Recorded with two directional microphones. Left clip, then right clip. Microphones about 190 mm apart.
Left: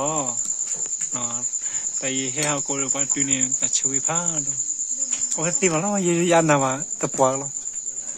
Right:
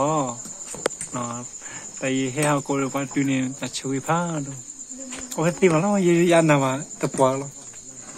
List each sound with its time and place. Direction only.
0.0 s cricket: 10° left (ahead or behind)
2.0 s speech: 10° left (ahead or behind); by 7.4 s 25° left (ahead or behind)